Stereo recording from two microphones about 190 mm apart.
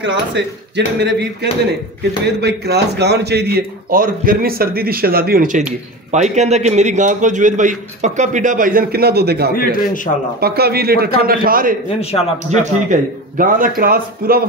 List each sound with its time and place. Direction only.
0.0 s a man's voice: 70° right (ahead or behind)
9.6 s a man's voice: 50° left (ahead or behind)
10.4 s a man's voice: 55° right (ahead or behind)